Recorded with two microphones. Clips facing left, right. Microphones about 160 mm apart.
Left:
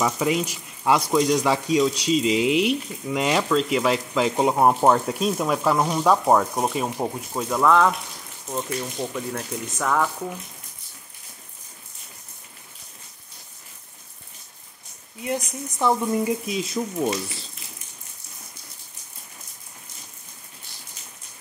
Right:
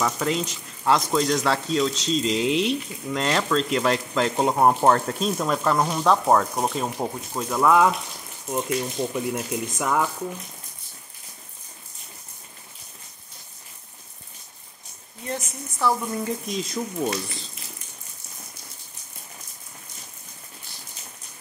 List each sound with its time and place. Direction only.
0.0 s speech: 10° left (ahead or behind); by 10.0 s 15° right (ahead or behind)
15.2 s speech: 15° left (ahead or behind)
16.4 s speech: 5° left (ahead or behind)